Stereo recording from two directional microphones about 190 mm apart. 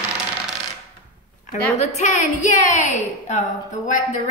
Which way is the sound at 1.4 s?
40° left (ahead or behind).